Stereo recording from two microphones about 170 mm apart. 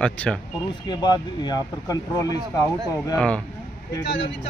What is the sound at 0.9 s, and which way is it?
Speech, 25° left (ahead or behind).